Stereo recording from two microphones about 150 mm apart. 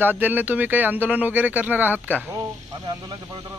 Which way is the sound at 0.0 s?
10° right (ahead or behind).